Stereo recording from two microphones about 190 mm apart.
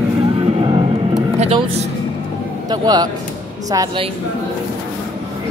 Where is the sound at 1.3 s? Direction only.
35° right (ahead or behind).